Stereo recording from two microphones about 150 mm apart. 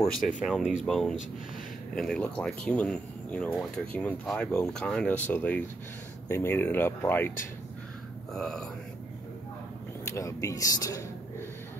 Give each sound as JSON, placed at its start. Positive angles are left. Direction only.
{"t": 0.4, "sound": "speech", "side_deg": -5}
{"t": 8.3, "sound": "speech", "side_deg": 5}
{"t": 10.0, "sound": "speech", "side_deg": 20}